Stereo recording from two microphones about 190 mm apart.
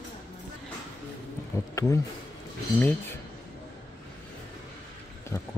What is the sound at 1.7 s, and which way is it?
Speech, 15° left (ahead or behind).